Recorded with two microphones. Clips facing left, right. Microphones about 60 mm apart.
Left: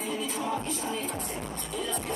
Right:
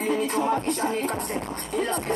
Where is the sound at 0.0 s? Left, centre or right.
Right.